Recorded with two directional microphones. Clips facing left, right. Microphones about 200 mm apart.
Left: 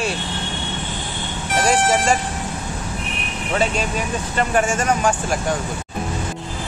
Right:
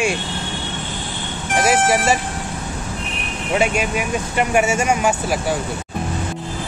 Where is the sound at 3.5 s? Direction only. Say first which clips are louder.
Right 2 dB; 10° right (ahead or behind).